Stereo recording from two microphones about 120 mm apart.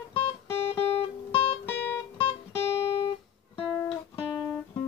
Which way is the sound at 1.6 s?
15° left (ahead or behind).